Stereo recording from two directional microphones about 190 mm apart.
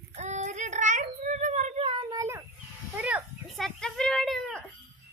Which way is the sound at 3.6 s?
5° left (ahead or behind).